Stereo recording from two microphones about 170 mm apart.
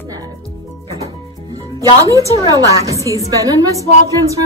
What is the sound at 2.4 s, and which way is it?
A woman's voice, 20° right (ahead or behind).